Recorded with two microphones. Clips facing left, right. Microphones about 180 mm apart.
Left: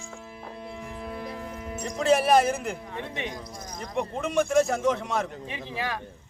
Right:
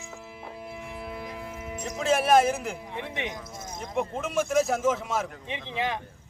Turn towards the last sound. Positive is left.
turn(degrees=-20)  # may be behind; listen again after turning